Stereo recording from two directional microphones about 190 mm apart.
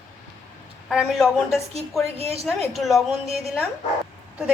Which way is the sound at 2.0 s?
30° right (ahead or behind).